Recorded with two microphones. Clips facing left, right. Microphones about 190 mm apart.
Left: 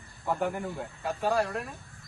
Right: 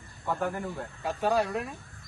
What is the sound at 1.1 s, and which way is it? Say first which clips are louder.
Speech: right 1 dB; centre (ahead or behind).